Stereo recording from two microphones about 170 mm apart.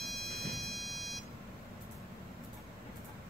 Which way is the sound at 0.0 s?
Centre (ahead or behind).